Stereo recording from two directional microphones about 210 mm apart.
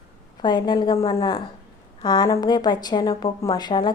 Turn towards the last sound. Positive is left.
turn(degrees=20)  # may be behind; listen again after turning